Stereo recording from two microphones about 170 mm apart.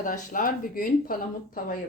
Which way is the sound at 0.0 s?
50° left (ahead or behind).